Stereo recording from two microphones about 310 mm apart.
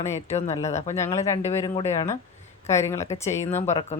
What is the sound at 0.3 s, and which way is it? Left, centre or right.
Speech, left.